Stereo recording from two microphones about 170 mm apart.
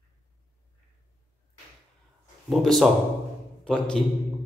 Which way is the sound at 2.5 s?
Centre (ahead or behind).